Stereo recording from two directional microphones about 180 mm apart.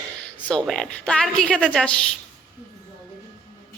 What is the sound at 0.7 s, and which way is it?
A woman's voice, 5° left (ahead or behind).